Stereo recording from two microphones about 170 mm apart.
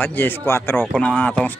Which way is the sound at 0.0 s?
10° left (ahead or behind).